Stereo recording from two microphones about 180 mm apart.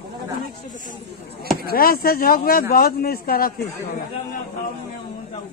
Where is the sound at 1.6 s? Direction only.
55° left (ahead or behind).